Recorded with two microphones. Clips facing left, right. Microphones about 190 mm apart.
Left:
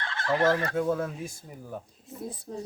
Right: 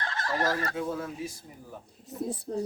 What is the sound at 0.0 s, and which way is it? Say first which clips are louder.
Fowl: left 5 dB; 40° right (ahead or behind).